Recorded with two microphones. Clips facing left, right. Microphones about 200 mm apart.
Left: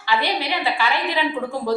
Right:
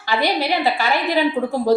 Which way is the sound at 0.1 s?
40° right (ahead or behind).